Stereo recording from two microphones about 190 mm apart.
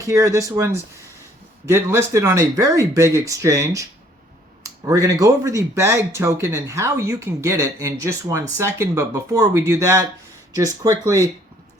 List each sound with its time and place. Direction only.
0.0 s a man's voice: 15° right (ahead or behind)